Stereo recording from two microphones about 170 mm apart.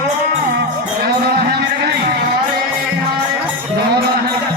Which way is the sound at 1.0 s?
65° right (ahead or behind).